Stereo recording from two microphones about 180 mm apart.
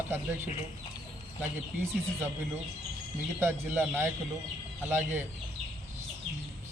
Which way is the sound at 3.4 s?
10° right (ahead or behind).